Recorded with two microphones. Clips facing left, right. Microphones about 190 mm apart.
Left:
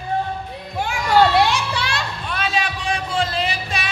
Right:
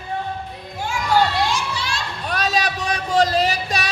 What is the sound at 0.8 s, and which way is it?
Children playing, 65° left (ahead or behind).